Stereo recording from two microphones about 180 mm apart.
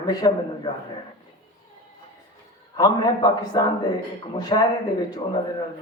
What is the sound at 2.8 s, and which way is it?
A man's voice, 20° left (ahead or behind).